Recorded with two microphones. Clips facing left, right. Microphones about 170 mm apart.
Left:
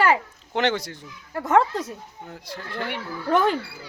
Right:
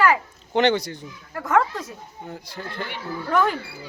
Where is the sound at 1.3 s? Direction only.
20° left (ahead or behind).